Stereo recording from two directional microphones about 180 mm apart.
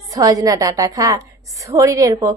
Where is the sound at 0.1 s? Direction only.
20° right (ahead or behind).